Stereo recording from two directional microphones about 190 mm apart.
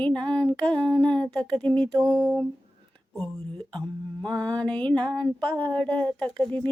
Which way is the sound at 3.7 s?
20° right (ahead or behind).